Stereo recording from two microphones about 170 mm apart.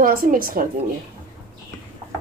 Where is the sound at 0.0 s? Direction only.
55° right (ahead or behind).